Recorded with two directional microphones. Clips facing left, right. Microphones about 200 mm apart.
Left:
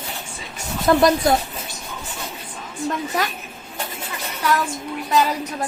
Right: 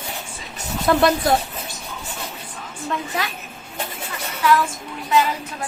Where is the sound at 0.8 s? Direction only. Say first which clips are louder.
Left 2 dB; centre (ahead or behind).